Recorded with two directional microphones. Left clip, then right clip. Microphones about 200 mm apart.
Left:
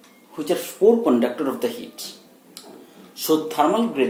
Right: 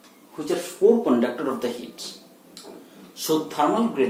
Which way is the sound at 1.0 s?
45° left (ahead or behind).